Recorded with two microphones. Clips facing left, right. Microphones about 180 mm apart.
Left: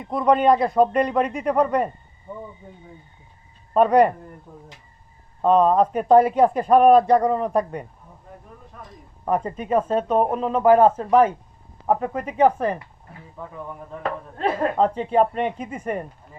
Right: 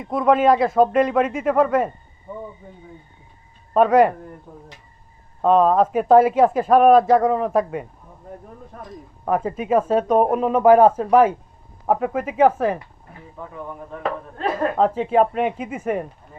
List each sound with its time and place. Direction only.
0.0 s a man's voice: centre (ahead or behind)
3.8 s a man's voice: centre (ahead or behind)
5.4 s a man's voice: centre (ahead or behind)
8.7 s speech: 45° right (ahead or behind)
9.2 s a man's voice: 5° right (ahead or behind)
14.3 s speech: 30° left (ahead or behind)
14.8 s speech: 5° right (ahead or behind)